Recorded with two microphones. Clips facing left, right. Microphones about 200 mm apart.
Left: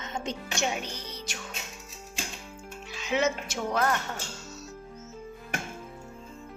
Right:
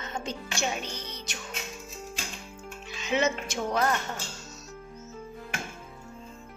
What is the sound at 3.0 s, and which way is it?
Speech, 5° left (ahead or behind).